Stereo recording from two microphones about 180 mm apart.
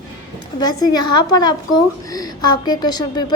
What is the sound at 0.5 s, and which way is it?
A woman's voice, 20° left (ahead or behind).